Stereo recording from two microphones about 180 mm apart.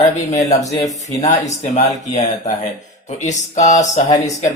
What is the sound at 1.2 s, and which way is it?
Speech, 40° left (ahead or behind).